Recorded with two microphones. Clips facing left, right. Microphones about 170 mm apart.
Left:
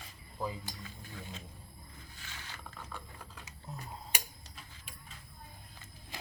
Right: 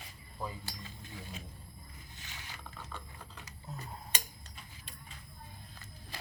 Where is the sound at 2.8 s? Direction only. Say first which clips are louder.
Even; 10° left (ahead or behind).